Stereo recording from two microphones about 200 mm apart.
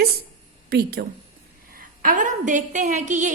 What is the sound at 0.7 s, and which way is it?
A woman's voice, 50° right (ahead or behind).